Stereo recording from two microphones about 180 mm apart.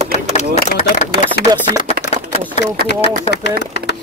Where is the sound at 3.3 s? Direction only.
70° left (ahead or behind).